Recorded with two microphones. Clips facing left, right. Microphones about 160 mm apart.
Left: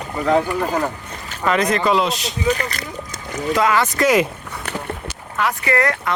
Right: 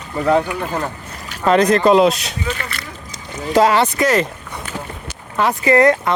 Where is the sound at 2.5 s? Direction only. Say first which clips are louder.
Left 7 dB; 40° left (ahead or behind).